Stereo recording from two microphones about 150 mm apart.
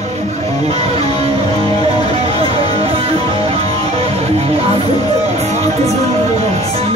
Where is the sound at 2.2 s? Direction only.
40° right (ahead or behind).